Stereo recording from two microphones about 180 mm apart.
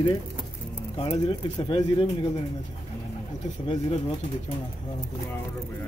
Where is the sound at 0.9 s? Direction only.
30° left (ahead or behind).